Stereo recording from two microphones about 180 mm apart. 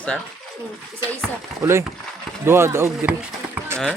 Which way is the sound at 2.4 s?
15° right (ahead or behind).